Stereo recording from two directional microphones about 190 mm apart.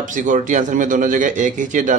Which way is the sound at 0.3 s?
40° right (ahead or behind).